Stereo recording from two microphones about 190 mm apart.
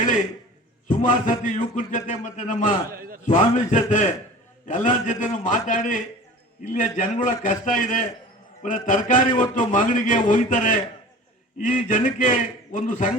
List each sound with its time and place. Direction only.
0.9 s a man's voice: 40° left (ahead or behind)